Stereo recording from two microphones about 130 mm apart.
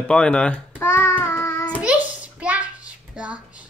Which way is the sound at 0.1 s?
10° left (ahead or behind).